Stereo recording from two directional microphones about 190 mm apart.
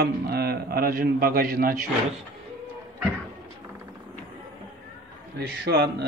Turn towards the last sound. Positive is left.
turn(degrees=-60)  # may be behind; listen again after turning